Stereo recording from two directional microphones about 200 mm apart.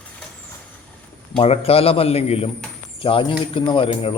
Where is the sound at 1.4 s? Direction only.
30° left (ahead or behind).